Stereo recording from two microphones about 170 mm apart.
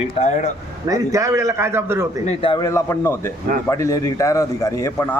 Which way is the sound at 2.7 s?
15° left (ahead or behind).